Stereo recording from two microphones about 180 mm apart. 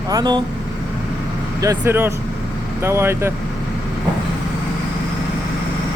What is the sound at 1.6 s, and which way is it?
Speech, 15° right (ahead or behind).